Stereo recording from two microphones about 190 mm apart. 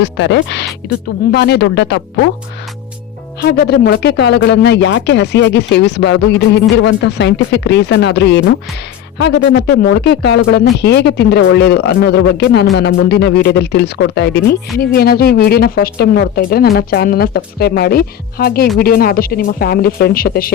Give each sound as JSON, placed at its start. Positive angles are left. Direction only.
{"t": 0.0, "sound": "speech", "side_deg": 70}
{"t": 3.4, "sound": "speech", "side_deg": 55}